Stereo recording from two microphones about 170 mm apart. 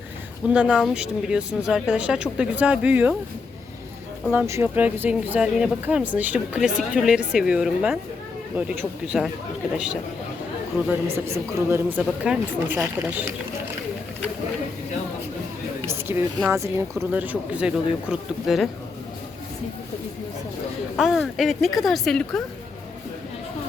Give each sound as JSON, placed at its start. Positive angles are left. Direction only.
{"t": 0.4, "sound": "speech", "side_deg": -5}
{"t": 4.3, "sound": "speech", "side_deg": -15}
{"t": 11.3, "sound": "speech", "side_deg": -15}
{"t": 15.9, "sound": "a sound", "side_deg": -15}
{"t": 16.5, "sound": "speech", "side_deg": -15}
{"t": 20.9, "sound": "speech", "side_deg": 0}